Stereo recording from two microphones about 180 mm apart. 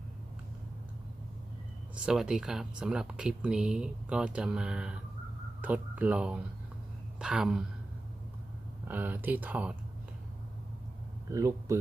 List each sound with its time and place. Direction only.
2.0 s speech: 5° right (ahead or behind)
8.9 s speech: 10° right (ahead or behind)
11.3 s speech: 20° right (ahead or behind)